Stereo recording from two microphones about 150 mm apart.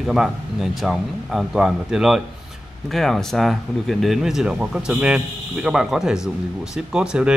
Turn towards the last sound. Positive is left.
turn(degrees=-5)  # may be behind; listen again after turning